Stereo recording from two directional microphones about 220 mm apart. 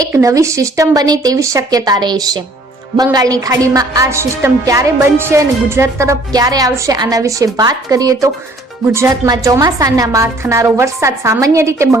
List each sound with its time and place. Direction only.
0.1 s a woman's voice: 15° right (ahead or behind)